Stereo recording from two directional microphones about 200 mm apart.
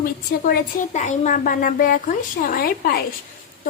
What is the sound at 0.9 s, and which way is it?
A woman's voice, 35° left (ahead or behind).